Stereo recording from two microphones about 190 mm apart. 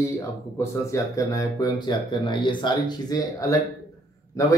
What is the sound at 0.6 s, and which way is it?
Speech, 15° left (ahead or behind).